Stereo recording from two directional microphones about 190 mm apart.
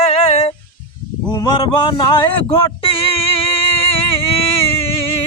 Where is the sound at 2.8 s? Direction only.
30° left (ahead or behind).